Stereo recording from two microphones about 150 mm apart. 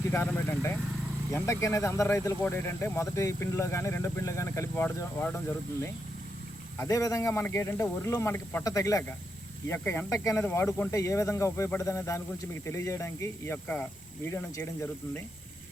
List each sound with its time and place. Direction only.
0.1 s speech: 15° left (ahead or behind)
6.7 s speech: 20° left (ahead or behind)